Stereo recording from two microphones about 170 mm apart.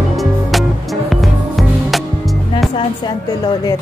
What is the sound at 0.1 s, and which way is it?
Music, centre (ahead or behind).